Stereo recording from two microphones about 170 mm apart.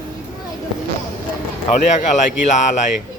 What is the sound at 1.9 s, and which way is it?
Speech, 45° left (ahead or behind).